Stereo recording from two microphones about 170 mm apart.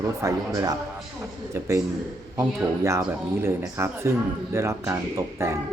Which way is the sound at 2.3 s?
15° right (ahead or behind).